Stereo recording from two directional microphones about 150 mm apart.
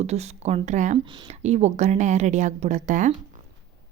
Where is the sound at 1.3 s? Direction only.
50° right (ahead or behind).